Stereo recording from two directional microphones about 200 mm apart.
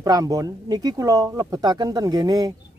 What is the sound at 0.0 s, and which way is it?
Speech, 20° right (ahead or behind).